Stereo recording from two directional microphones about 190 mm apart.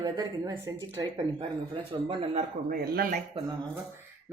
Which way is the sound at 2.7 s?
50° right (ahead or behind).